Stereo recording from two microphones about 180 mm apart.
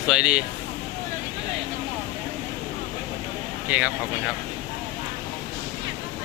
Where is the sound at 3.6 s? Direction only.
5° right (ahead or behind).